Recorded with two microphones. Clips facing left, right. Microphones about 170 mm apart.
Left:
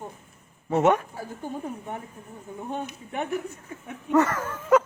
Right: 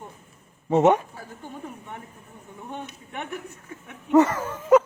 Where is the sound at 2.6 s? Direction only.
35° left (ahead or behind).